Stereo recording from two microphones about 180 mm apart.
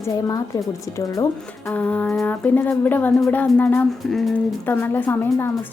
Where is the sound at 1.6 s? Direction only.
10° left (ahead or behind).